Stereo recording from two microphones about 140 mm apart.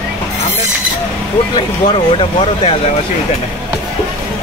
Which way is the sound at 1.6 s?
40° left (ahead or behind).